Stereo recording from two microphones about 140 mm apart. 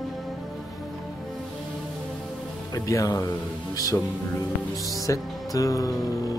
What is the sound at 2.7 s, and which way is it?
Speech, 25° left (ahead or behind).